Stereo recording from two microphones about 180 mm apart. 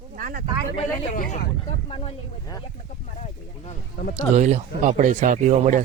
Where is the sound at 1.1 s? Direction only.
45° left (ahead or behind).